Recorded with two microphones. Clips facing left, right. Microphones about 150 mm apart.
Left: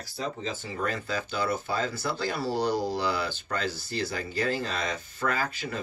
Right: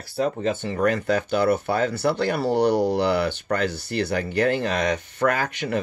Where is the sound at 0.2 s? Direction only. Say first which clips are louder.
Right 10 dB; 65° right (ahead or behind).